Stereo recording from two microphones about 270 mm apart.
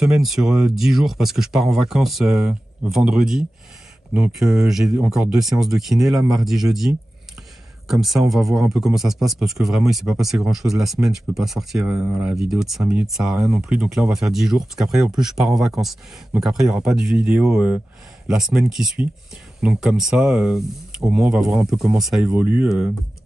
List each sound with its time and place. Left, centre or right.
0.0 s speech: centre